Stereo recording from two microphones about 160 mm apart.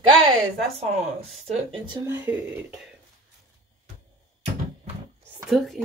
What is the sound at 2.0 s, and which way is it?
Speech, 10° right (ahead or behind).